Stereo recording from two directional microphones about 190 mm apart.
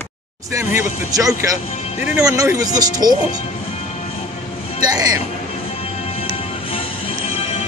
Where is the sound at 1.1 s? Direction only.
20° right (ahead or behind).